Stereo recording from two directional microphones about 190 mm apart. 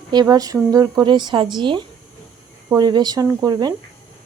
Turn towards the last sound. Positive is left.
turn(degrees=-20)  # may be behind; listen again after turning